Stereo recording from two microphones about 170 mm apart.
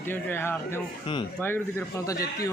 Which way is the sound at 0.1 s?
10° left (ahead or behind).